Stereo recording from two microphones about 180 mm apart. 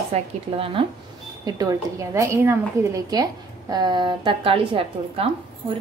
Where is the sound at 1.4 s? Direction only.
20° right (ahead or behind).